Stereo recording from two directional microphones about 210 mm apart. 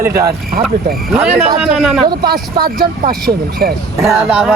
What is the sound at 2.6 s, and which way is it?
Speech, 45° right (ahead or behind).